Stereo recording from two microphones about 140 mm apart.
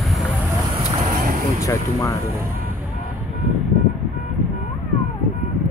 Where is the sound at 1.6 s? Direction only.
20° left (ahead or behind).